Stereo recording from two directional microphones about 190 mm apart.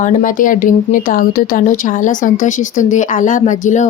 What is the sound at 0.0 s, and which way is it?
Speech, 45° left (ahead or behind).